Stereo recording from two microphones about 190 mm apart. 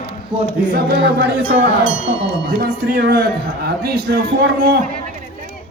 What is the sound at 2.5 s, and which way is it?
Speech, 50° right (ahead or behind).